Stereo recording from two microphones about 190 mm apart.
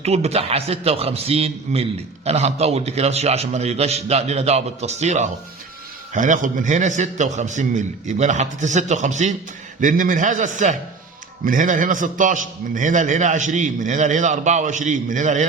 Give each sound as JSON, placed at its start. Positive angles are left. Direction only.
{"t": 0.0, "sound": "a man's voice", "side_deg": -35}